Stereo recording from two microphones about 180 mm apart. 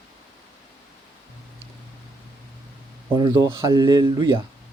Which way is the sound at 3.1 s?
25° right (ahead or behind).